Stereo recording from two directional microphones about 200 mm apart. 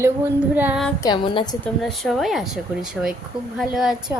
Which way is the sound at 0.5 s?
10° right (ahead or behind).